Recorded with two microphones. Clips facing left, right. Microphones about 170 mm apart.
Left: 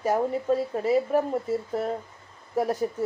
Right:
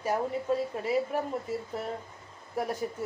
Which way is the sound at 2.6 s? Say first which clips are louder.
Left 6 dB; 40° left (ahead or behind).